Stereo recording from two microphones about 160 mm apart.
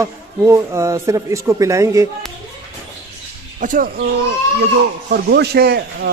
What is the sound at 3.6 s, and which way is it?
Speech, 55° right (ahead or behind).